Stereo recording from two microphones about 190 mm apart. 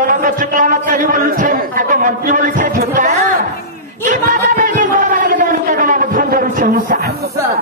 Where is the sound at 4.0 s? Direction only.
40° right (ahead or behind).